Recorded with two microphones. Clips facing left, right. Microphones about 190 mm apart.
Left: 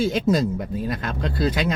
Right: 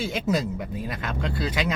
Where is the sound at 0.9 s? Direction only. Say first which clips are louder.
Left 3 dB; 45° left (ahead or behind).